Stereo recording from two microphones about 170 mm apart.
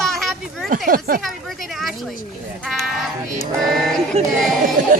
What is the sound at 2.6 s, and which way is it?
Speech, centre (ahead or behind).